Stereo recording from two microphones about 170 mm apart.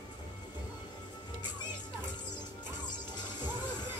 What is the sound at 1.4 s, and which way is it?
Music, 25° left (ahead or behind).